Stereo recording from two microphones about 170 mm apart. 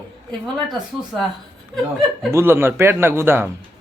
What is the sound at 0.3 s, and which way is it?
Speech, centre (ahead or behind).